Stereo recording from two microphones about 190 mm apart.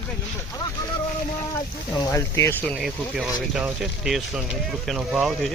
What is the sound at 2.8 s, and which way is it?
Speech, centre (ahead or behind).